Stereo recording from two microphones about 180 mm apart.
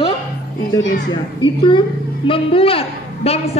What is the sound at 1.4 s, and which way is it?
A woman's voice, 25° left (ahead or behind).